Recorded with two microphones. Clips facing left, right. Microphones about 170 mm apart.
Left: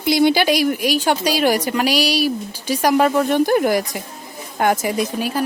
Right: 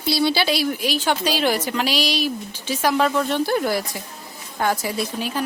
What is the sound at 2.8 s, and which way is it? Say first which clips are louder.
Speech: left 4 dB; 45° left (ahead or behind).